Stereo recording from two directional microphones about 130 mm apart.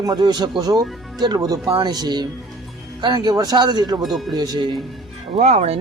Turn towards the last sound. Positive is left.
turn(degrees=-55)  # may be behind; listen again after turning